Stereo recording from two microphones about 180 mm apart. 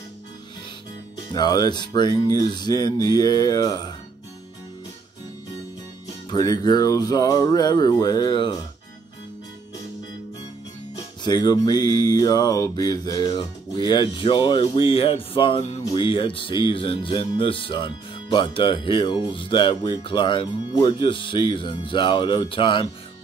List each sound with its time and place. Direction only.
1.3 s speech: 20° left (ahead or behind)
6.3 s speech: 20° left (ahead or behind)
11.2 s speech: 20° left (ahead or behind)